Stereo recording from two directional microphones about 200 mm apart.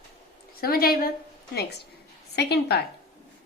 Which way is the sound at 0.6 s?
50° left (ahead or behind).